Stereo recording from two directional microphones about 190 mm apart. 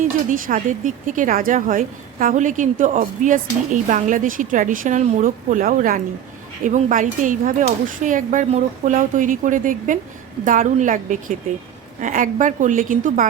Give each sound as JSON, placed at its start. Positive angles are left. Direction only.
{"t": 0.0, "sound": "speech", "side_deg": -45}